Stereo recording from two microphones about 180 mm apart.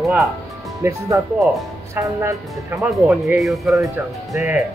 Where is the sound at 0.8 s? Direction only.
15° right (ahead or behind).